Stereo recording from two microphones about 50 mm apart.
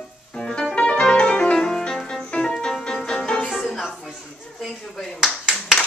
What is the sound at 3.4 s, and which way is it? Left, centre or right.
Music, centre.